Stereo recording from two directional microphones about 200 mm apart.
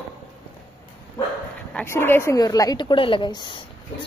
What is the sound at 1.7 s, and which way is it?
A woman's voice, 10° left (ahead or behind).